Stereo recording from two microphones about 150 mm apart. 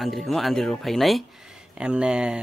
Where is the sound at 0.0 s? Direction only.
Centre (ahead or behind).